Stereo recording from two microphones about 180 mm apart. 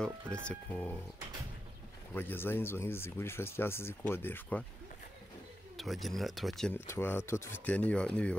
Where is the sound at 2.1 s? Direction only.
10° left (ahead or behind).